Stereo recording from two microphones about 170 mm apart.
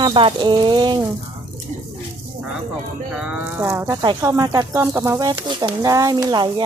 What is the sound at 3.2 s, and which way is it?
Speech, 10° right (ahead or behind).